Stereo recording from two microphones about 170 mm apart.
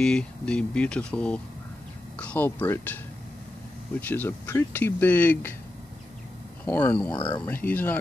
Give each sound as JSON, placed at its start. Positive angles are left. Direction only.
{"t": 0.0, "sound": "speech", "side_deg": 5}
{"t": 4.0, "sound": "speech", "side_deg": 10}
{"t": 6.6, "sound": "speech", "side_deg": 10}
{"t": 7.2, "sound": "speech", "side_deg": 25}
{"t": 7.4, "sound": "speech", "side_deg": 10}